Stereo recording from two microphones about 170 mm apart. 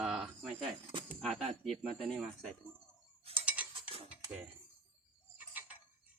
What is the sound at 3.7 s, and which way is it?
Stir, 30° right (ahead or behind).